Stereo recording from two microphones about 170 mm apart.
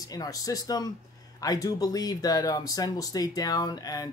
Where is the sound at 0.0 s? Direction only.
20° left (ahead or behind).